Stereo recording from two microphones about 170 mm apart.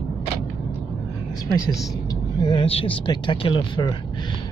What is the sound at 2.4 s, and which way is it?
Speech, 30° left (ahead or behind).